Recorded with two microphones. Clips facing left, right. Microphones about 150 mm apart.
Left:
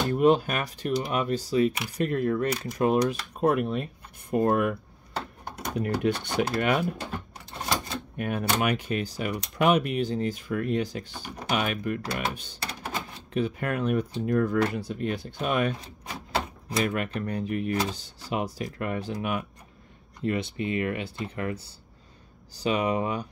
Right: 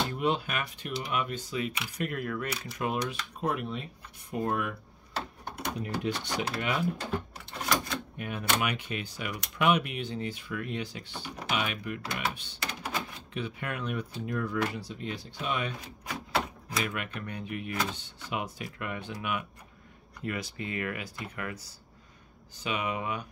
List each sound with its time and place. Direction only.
0.1 s speech: 45° left (ahead or behind)
2.5 s speech: 45° left (ahead or behind)
8.2 s speech: 50° left (ahead or behind)
16.6 s speech: 40° left (ahead or behind)
20.2 s speech: 25° left (ahead or behind)